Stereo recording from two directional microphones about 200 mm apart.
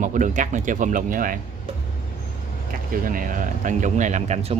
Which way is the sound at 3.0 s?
45° right (ahead or behind).